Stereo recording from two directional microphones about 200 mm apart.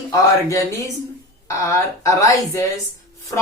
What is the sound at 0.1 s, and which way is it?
A woman's voice, 15° left (ahead or behind).